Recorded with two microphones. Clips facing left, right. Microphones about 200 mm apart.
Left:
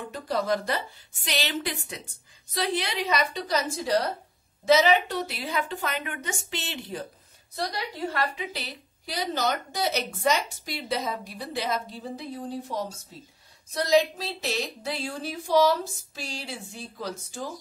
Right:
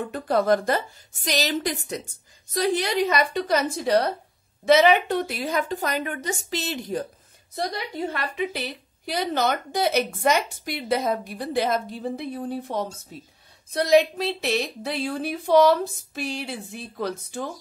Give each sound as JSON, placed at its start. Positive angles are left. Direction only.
{"t": 0.1, "sound": "a woman's voice", "side_deg": -55}
{"t": 8.4, "sound": "speech", "side_deg": -55}